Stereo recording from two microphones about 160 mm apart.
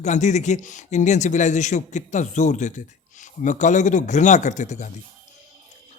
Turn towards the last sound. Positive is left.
turn(degrees=50)  # may be behind; listen again after turning